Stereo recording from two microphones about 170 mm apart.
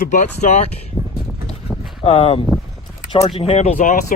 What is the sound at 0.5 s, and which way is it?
Speech, 40° left (ahead or behind).